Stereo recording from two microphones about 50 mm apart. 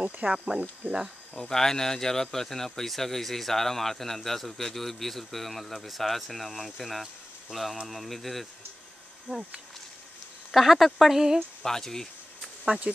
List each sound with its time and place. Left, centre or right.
0.3 s speech: right
1.5 s speech: centre
7.5 s speech: centre
7.9 s speech: centre
9.3 s speech: right
10.5 s speech: centre
11.6 s speech: centre
12.6 s speech: centre